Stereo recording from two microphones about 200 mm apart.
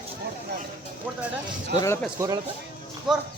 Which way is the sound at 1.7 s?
15° left (ahead or behind).